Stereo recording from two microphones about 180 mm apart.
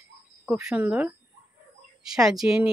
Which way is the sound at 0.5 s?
5° right (ahead or behind).